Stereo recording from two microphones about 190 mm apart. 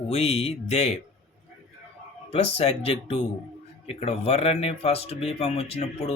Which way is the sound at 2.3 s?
35° left (ahead or behind).